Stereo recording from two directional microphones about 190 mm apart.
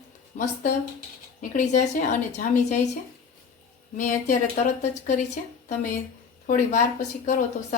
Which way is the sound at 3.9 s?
40° left (ahead or behind).